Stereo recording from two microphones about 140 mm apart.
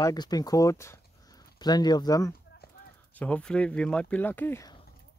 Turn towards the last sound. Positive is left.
turn(degrees=15)  # may be behind; listen again after turning